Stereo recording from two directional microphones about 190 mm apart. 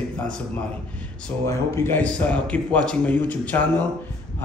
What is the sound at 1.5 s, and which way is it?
A man's voice, 15° left (ahead or behind).